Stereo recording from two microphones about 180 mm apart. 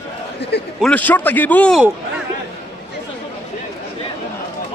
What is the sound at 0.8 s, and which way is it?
A man's voice, 10° left (ahead or behind).